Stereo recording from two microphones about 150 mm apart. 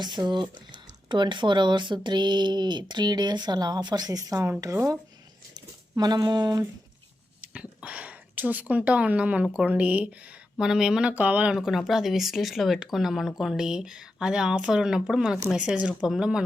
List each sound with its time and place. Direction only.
0.0 s speech: 30° right (ahead or behind)
7.4 s a woman's voice: 10° right (ahead or behind)